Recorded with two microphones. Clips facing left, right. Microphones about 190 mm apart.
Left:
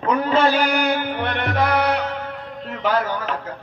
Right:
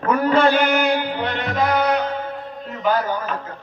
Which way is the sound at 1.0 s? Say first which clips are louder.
Even; 55° left (ahead or behind).